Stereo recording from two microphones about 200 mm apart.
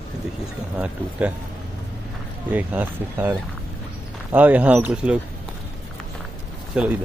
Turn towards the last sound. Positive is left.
turn(degrees=-5)  # may be behind; listen again after turning